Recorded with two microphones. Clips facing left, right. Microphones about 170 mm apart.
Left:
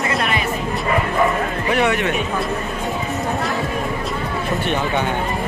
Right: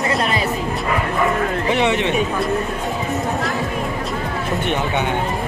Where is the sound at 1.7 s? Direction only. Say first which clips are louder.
Left 1 dB; 20° right (ahead or behind).